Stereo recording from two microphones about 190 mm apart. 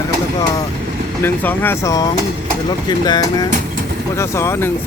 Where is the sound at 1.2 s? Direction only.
10° left (ahead or behind).